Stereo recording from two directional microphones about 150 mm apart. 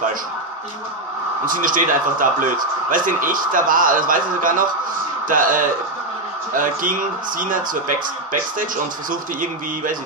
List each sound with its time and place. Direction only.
1.4 s a man's voice: 65° right (ahead or behind)
9.1 s a man's voice: 65° right (ahead or behind)